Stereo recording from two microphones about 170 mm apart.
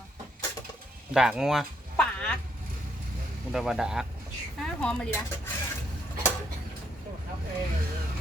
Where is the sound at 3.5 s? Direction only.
Centre (ahead or behind).